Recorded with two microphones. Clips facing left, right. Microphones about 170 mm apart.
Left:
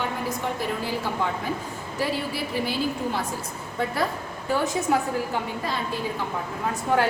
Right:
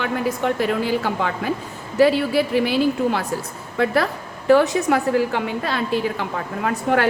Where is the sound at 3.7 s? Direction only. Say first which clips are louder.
Right 7 dB; 80° right.